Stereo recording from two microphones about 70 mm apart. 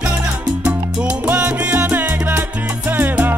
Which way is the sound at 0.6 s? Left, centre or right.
Centre.